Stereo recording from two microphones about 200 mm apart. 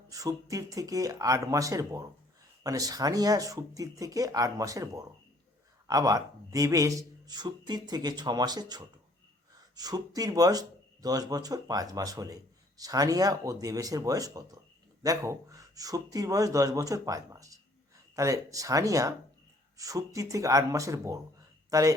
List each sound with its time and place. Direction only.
0.1 s a man's voice: 15° right (ahead or behind)